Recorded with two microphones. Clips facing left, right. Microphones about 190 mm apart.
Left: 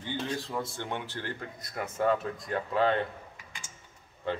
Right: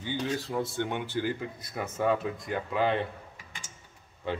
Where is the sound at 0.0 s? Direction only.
5° right (ahead or behind).